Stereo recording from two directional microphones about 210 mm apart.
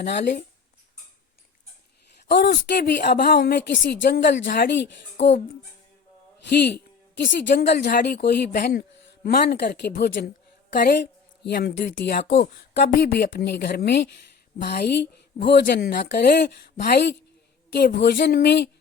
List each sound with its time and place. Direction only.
0.0 s speech: 55° left (ahead or behind)
2.3 s speech: 50° left (ahead or behind)
6.5 s a woman's voice: 50° left (ahead or behind)